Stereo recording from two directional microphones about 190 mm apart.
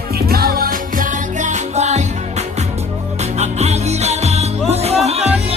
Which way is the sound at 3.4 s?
35° right (ahead or behind).